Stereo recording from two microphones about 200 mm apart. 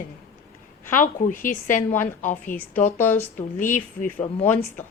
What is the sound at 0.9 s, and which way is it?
A woman's voice, 40° left (ahead or behind).